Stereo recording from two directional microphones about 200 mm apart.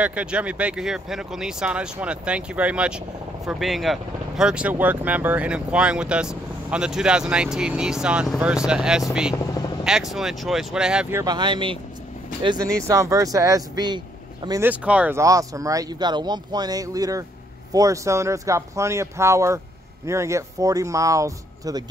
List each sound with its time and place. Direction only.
0.0 s speech: 5° right (ahead or behind); by 14.6 s 20° right (ahead or behind)
14.6 s speech: 5° right (ahead or behind)